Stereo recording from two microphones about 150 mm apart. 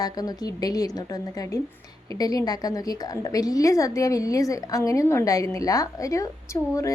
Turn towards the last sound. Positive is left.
turn(degrees=20)  # may be behind; listen again after turning